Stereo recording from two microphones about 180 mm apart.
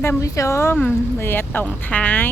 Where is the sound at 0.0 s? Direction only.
15° left (ahead or behind).